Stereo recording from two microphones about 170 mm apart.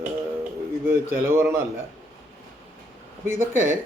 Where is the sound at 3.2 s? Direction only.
15° right (ahead or behind).